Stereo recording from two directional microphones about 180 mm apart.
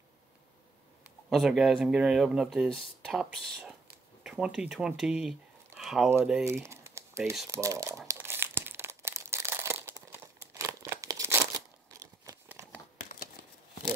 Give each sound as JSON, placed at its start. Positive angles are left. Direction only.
{"t": 1.3, "sound": "speech", "side_deg": 0}
{"t": 6.4, "sound": "crumpling", "side_deg": -15}
{"t": 7.4, "sound": "speech", "side_deg": -15}
{"t": 8.1, "sound": "crumpling", "side_deg": -10}